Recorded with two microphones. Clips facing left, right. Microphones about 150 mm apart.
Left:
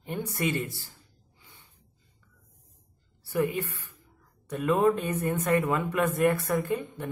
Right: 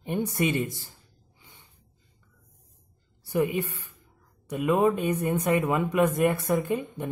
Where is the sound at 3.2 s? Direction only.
15° right (ahead or behind).